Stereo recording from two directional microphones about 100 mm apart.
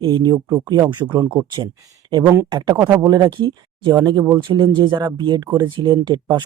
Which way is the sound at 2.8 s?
40° right (ahead or behind).